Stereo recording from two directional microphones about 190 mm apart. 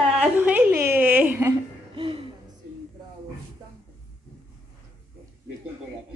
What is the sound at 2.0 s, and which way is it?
Music, 30° right (ahead or behind).